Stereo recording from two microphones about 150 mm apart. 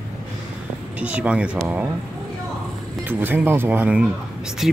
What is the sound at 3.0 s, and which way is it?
Speech, 15° right (ahead or behind).